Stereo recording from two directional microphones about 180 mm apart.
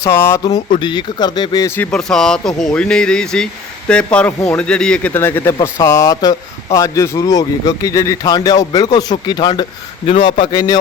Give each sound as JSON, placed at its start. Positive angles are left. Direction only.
{"t": 0.0, "sound": "speech", "side_deg": 15}